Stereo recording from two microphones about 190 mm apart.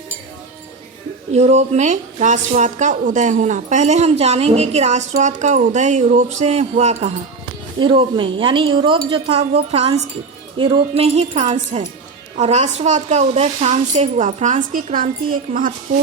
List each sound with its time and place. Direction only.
1.3 s a woman's voice: 35° right (ahead or behind)
7.8 s speech: 25° right (ahead or behind)
10.6 s a woman's voice: 30° right (ahead or behind); by 15.7 s 45° right (ahead or behind)